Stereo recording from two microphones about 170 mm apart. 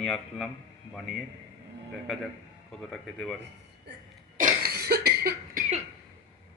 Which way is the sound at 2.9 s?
Centre (ahead or behind).